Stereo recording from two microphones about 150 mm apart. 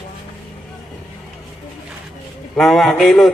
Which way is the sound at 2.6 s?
Centre (ahead or behind).